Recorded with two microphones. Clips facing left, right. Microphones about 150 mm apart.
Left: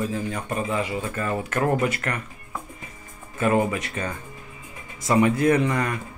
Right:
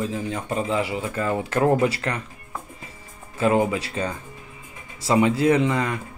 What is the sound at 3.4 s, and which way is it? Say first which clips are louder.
Speech: right 1 dB; 25° right (ahead or behind).